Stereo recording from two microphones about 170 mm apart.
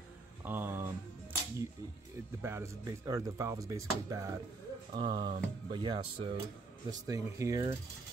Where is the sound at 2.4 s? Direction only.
15° right (ahead or behind).